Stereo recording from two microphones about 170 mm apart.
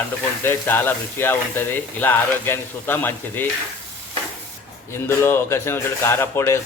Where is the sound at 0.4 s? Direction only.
15° left (ahead or behind).